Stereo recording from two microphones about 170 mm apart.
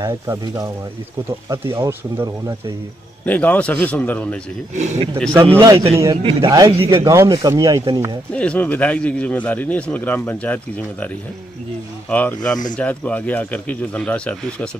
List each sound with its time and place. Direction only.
0.0 s speech: 20° right (ahead or behind)
3.3 s speech: 10° left (ahead or behind)
4.7 s speech: 40° right (ahead or behind)
5.6 s speech: 20° right (ahead or behind)
8.3 s speech: 5° left (ahead or behind)
12.1 s speech: 10° left (ahead or behind)